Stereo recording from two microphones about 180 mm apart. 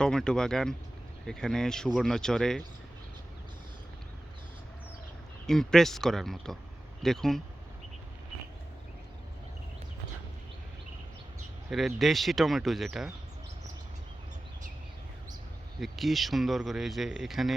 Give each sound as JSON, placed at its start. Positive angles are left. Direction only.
{"t": 0.0, "sound": "speech", "side_deg": 5}
{"t": 5.5, "sound": "speech", "side_deg": 0}
{"t": 11.7, "sound": "speech", "side_deg": 0}
{"t": 15.8, "sound": "speech", "side_deg": 0}